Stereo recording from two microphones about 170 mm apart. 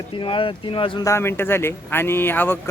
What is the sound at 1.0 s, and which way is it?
A man's voice, 15° left (ahead or behind).